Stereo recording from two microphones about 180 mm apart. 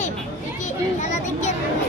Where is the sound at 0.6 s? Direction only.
40° left (ahead or behind).